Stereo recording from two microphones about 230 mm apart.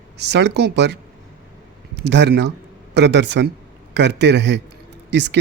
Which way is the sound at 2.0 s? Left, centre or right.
Right.